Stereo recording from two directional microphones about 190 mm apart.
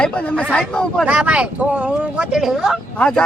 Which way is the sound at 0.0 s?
5° left (ahead or behind).